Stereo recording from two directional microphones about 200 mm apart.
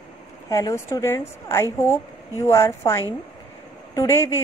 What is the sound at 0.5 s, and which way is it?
A woman's voice, 15° left (ahead or behind).